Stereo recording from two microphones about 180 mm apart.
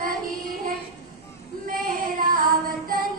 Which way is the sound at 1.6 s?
50° right (ahead or behind).